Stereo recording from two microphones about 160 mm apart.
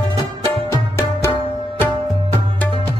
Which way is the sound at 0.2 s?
20° left (ahead or behind).